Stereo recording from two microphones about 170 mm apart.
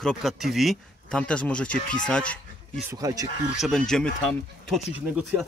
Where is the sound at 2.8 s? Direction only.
20° right (ahead or behind).